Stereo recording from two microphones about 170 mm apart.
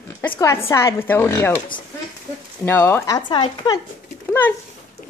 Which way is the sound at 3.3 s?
25° left (ahead or behind).